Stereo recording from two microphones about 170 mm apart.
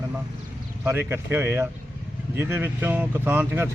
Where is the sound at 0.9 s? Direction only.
15° right (ahead or behind).